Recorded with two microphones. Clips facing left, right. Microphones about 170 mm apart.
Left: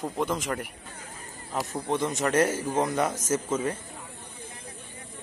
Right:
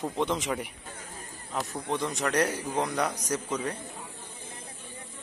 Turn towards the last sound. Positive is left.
turn(degrees=25)  # may be behind; listen again after turning